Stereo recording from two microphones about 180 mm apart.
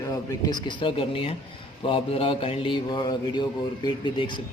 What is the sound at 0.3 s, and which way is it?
Speech, 25° left (ahead or behind).